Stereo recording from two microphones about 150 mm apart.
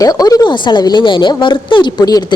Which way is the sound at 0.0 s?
25° left (ahead or behind).